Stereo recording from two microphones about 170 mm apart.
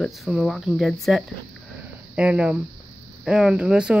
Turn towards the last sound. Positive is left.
turn(degrees=-5)  # may be behind; listen again after turning